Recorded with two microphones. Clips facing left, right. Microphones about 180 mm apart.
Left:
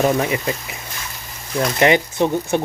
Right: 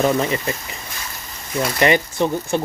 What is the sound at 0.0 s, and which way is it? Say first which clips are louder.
Speech: left 1 dB; 10° left (ahead or behind).